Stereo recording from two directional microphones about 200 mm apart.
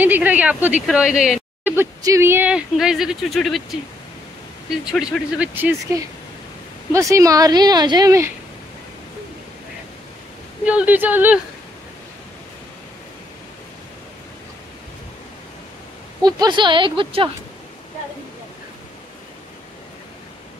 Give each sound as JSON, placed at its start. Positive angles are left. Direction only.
{"t": 0.0, "sound": "speech", "side_deg": -10}
{"t": 4.8, "sound": "speech", "side_deg": -5}
{"t": 6.9, "sound": "speech", "side_deg": -15}
{"t": 10.6, "sound": "speech", "side_deg": -5}
{"t": 16.2, "sound": "speech", "side_deg": -20}